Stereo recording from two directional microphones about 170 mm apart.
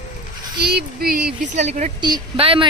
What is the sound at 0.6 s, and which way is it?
Speech, 65° right (ahead or behind).